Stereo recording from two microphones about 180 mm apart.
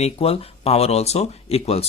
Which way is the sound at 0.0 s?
35° left (ahead or behind).